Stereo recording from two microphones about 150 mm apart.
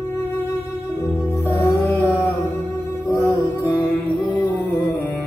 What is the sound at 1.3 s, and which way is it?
Music, 15° left (ahead or behind).